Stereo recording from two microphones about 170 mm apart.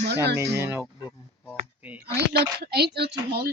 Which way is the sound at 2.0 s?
75° right (ahead or behind).